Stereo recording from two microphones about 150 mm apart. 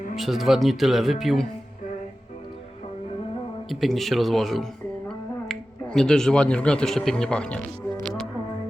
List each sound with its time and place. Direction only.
0.2 s speech: centre (ahead or behind)
3.7 s speech: centre (ahead or behind)